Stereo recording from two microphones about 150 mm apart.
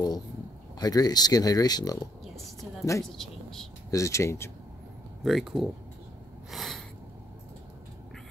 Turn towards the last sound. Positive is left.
turn(degrees=0)  # may be behind; listen again after turning